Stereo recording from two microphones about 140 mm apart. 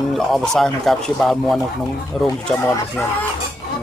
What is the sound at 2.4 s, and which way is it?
Speech, 15° left (ahead or behind).